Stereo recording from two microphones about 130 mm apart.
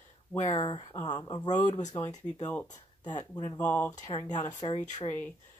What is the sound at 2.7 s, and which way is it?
Speech, 30° left (ahead or behind).